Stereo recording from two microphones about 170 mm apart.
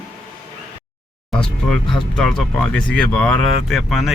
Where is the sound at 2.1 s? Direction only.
5° left (ahead or behind).